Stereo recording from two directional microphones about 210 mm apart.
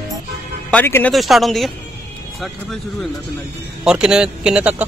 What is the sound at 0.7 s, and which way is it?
A man's voice, 10° left (ahead or behind).